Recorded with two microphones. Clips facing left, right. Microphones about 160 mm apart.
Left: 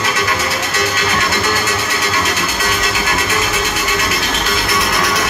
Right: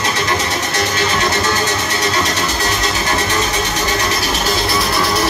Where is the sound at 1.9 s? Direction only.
35° right (ahead or behind).